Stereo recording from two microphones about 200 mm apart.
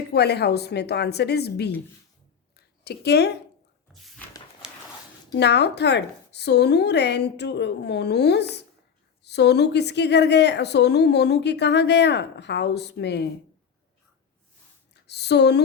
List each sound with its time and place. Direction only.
0.1 s a woman's voice: 55° left (ahead or behind)
2.6 s a sound: 55° left (ahead or behind)
5.3 s a woman's voice: 60° left (ahead or behind)
15.0 s speech: 55° left (ahead or behind)